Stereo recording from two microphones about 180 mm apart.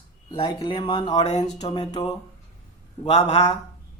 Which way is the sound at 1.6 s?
25° left (ahead or behind).